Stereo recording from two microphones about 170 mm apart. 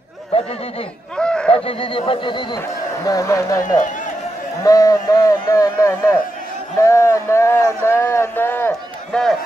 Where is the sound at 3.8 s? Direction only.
50° left (ahead or behind).